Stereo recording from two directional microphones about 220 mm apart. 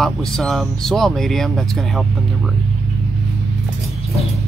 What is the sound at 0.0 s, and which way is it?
Speech, centre (ahead or behind).